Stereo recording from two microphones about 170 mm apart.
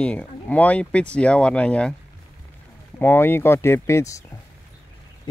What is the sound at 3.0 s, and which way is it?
Speech, 10° left (ahead or behind).